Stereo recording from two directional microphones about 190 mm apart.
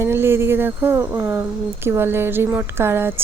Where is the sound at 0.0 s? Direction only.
10° right (ahead or behind).